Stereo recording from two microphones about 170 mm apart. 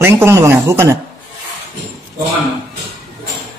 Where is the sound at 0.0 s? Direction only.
15° right (ahead or behind).